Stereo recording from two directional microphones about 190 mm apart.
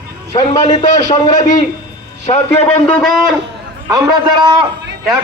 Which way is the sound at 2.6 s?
10° left (ahead or behind).